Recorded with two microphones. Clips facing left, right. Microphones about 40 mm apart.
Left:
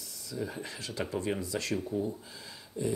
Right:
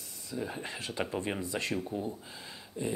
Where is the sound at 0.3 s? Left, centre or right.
Right.